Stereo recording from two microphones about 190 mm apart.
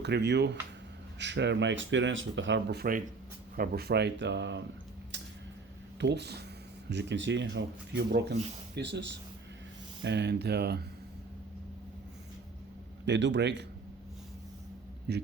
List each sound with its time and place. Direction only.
0.0 s speech: 60° right (ahead or behind)
6.0 s speech: 65° right (ahead or behind)
13.1 s speech: 70° right (ahead or behind)
15.1 s speech: 60° right (ahead or behind)